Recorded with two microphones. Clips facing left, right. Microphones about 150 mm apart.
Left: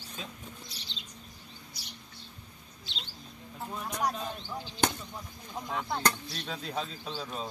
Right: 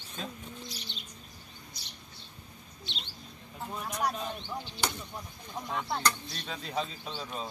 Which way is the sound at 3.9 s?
10° left (ahead or behind).